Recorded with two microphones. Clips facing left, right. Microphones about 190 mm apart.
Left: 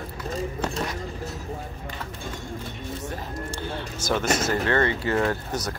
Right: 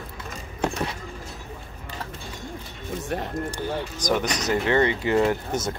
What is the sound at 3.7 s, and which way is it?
Speech, 15° right (ahead or behind).